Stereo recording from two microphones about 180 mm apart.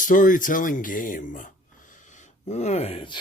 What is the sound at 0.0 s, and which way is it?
Speech, 45° left (ahead or behind).